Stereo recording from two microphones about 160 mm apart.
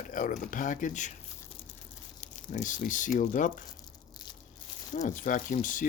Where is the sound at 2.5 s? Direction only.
50° left (ahead or behind).